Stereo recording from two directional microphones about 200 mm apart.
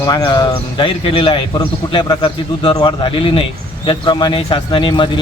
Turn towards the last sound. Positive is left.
turn(degrees=25)  # may be behind; listen again after turning